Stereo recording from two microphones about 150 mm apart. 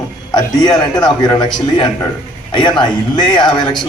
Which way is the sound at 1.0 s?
30° left (ahead or behind).